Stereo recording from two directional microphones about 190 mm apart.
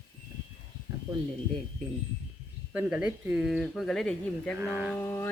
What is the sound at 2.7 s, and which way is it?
Speech, 5° right (ahead or behind).